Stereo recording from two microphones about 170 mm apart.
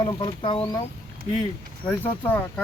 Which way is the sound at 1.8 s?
10° left (ahead or behind).